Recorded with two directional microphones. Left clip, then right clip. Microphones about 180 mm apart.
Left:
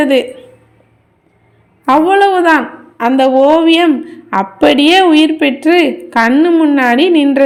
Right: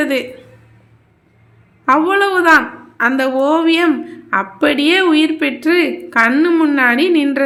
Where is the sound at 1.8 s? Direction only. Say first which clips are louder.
Left 4 dB; 20° left (ahead or behind).